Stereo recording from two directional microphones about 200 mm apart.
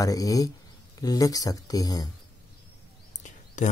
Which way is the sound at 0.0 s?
15° left (ahead or behind).